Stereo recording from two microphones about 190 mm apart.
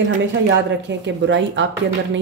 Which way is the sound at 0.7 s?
70° right (ahead or behind).